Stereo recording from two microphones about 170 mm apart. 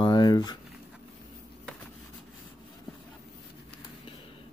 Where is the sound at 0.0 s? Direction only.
25° left (ahead or behind).